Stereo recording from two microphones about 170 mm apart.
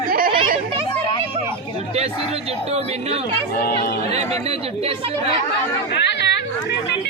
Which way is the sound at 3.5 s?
65° left (ahead or behind).